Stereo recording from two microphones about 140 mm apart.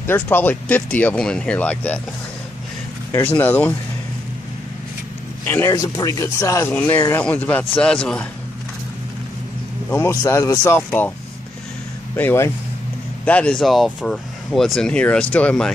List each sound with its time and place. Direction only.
0.0 s speech: 15° left (ahead or behind)
3.3 s speech: 15° left (ahead or behind)
5.4 s a man's voice: 15° left (ahead or behind)
6.7 s speech: 10° left (ahead or behind)
7.0 s speech: 20° left (ahead or behind)
9.8 s speech: 20° left (ahead or behind)
12.2 s speech: 15° left (ahead or behind)